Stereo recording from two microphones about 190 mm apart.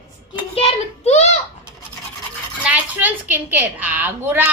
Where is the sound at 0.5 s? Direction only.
35° left (ahead or behind).